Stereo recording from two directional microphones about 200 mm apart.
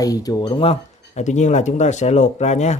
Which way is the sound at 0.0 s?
20° left (ahead or behind).